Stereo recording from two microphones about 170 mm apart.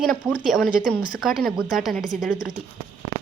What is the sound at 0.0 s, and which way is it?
A woman's voice, centre (ahead or behind).